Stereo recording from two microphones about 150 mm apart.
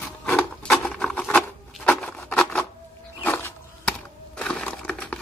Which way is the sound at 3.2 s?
10° left (ahead or behind).